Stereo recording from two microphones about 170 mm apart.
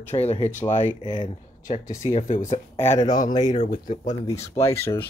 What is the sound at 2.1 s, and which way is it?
Speech, 45° left (ahead or behind).